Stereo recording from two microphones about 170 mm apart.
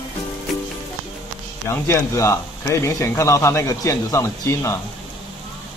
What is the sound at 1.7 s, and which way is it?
Speech, 15° left (ahead or behind).